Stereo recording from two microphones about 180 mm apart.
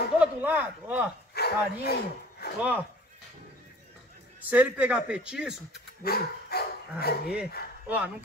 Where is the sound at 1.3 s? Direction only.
65° left (ahead or behind).